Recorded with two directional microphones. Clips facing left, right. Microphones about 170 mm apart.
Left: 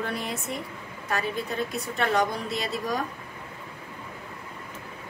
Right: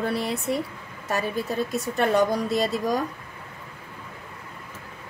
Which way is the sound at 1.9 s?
45° right (ahead or behind).